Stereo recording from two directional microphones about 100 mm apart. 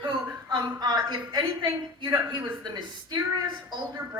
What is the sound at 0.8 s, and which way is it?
Speech, 45° right (ahead or behind).